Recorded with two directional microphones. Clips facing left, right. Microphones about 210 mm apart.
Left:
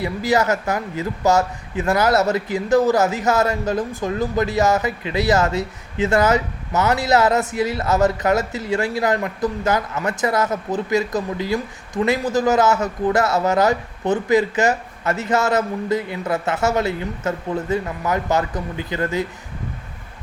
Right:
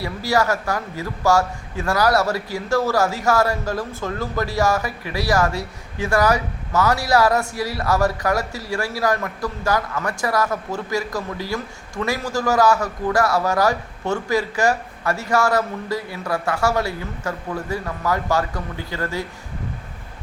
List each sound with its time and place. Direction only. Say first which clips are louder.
0.0 s a man's voice: left 2 dB; 20° left (ahead or behind)